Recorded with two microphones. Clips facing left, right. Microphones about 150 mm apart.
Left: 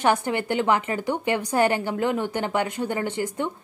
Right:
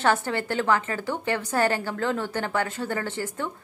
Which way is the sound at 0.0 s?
15° left (ahead or behind).